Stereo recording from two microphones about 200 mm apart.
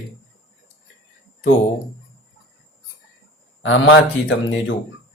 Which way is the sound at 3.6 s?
75° left (ahead or behind).